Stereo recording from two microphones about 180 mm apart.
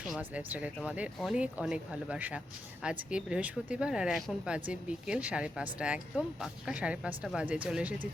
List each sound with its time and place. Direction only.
0.2 s a woman's voice: 10° right (ahead or behind)